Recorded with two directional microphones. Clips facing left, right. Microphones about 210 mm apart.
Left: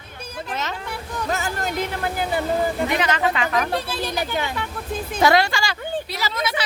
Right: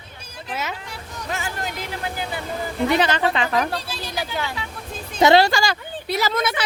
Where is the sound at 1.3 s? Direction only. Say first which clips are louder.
Left 3 dB; 40° left (ahead or behind).